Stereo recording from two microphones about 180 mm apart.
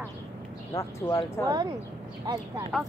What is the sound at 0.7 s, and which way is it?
Speech, 15° left (ahead or behind).